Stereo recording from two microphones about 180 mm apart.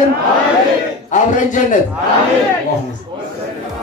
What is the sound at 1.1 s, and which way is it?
Speech, 45° left (ahead or behind).